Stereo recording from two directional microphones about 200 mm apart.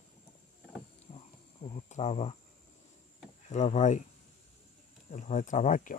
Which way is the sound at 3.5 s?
35° left (ahead or behind).